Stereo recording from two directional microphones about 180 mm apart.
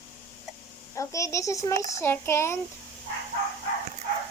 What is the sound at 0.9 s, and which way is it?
A child's voice, 15° left (ahead or behind).